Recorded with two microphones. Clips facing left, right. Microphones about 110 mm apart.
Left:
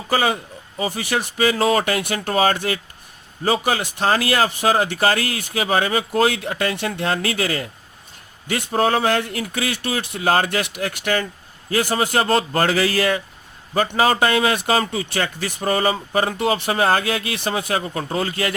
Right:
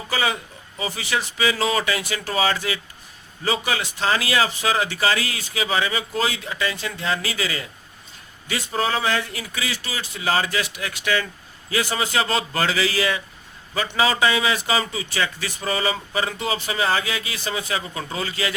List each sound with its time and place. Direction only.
0.1 s speech: 50° left (ahead or behind)